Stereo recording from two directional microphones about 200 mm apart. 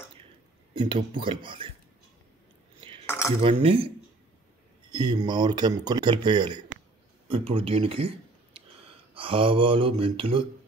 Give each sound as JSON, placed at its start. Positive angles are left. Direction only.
{"t": 1.1, "sound": "speech", "side_deg": -25}
{"t": 2.8, "sound": "cutlery", "side_deg": -25}
{"t": 3.1, "sound": "cutlery", "side_deg": 15}
{"t": 3.4, "sound": "speech", "side_deg": -25}
{"t": 4.9, "sound": "speech", "side_deg": -20}